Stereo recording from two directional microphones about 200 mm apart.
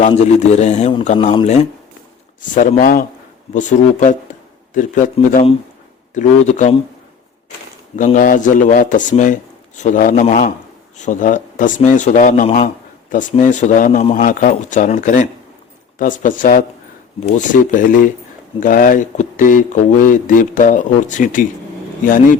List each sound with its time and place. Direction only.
0.1 s speech: 35° left (ahead or behind)
7.9 s speech: 40° left (ahead or behind)